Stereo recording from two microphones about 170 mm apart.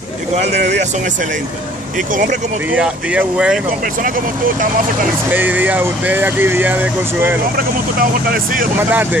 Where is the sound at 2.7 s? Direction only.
5° right (ahead or behind).